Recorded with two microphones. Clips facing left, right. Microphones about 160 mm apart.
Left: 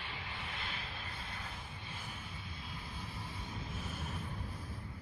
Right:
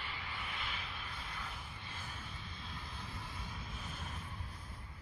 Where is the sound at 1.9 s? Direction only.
10° left (ahead or behind).